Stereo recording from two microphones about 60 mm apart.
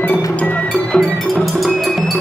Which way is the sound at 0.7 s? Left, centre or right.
Centre.